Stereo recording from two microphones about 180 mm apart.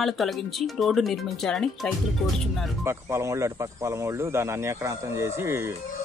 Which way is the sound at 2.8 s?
15° right (ahead or behind).